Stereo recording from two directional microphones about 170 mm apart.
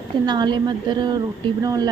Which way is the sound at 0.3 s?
25° right (ahead or behind).